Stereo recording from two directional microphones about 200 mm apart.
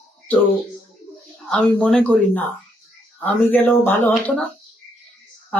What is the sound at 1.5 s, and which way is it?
A man's voice, 5° left (ahead or behind).